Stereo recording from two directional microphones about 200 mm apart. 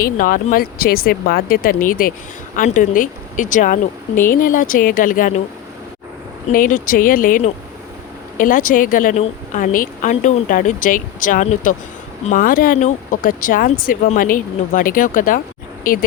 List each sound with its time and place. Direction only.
0.0 s speech: 45° left (ahead or behind)
6.5 s speech: 40° left (ahead or behind)